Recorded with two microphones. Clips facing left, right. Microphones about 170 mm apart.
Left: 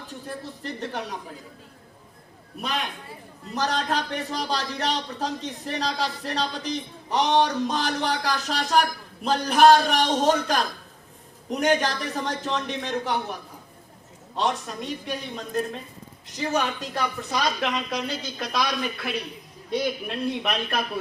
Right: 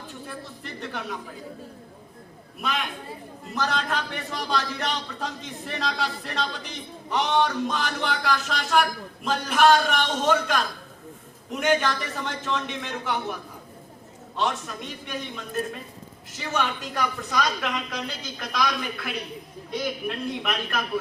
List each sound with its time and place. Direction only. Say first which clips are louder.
0.3 s a woman's voice: left 7 dB; 35° left (ahead or behind)
2.6 s a man's voice: even; 35° left (ahead or behind)
14.3 s a man's voice: left 1 dB; 35° left (ahead or behind)
17.3 s a woman's voice: left 1 dB; 25° left (ahead or behind)
20.1 s a woman's voice: left 2 dB; 25° left (ahead or behind)